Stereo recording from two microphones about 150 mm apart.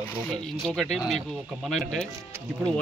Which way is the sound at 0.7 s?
Centre (ahead or behind).